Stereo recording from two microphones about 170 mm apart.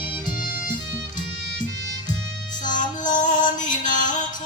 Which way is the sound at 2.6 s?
50° left (ahead or behind).